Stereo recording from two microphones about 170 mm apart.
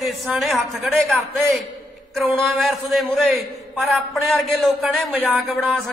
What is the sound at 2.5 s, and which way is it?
Speech, centre (ahead or behind).